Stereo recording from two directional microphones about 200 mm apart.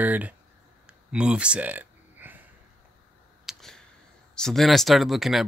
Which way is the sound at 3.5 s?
Centre (ahead or behind).